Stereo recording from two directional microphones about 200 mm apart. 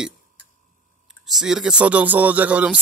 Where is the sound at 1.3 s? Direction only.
Centre (ahead or behind).